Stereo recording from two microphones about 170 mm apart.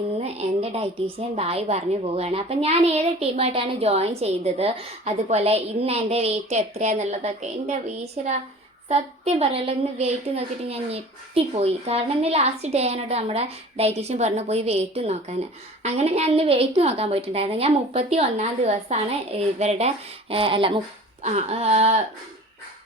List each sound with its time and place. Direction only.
0.2 s a sound: 40° right (ahead or behind)
1.4 s a woman's voice: 35° right (ahead or behind)
21.2 s a woman's voice: 45° right (ahead or behind)